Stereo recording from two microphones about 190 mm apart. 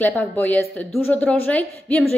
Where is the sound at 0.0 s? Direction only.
10° left (ahead or behind).